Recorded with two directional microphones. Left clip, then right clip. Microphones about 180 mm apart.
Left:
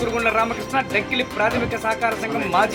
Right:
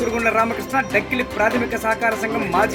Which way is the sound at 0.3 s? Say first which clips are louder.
Right 3 dB; 55° right (ahead or behind).